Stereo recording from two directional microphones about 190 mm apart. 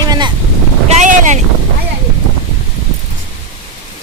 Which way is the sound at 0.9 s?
40° right (ahead or behind).